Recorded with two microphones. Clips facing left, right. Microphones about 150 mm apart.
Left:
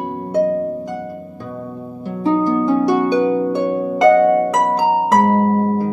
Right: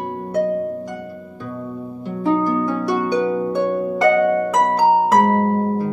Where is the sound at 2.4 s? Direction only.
20° left (ahead or behind).